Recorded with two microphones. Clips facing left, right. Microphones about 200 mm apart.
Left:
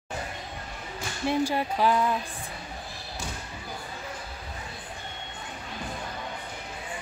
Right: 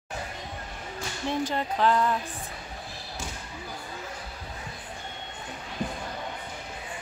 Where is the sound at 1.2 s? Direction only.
10° left (ahead or behind).